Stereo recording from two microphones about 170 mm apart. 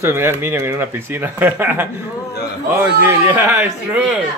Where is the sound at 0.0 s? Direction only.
15° right (ahead or behind).